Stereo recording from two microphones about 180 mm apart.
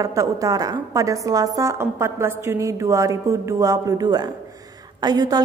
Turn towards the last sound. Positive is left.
turn(degrees=-20)  # may be behind; listen again after turning